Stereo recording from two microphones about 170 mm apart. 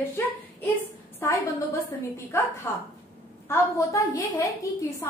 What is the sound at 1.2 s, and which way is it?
A woman's voice, 15° left (ahead or behind).